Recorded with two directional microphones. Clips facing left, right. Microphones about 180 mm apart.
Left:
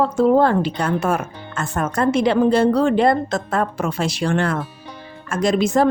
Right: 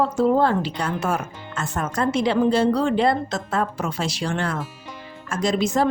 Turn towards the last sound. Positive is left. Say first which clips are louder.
# left 4 dB
turn(degrees=55)  # may be behind; listen again after turning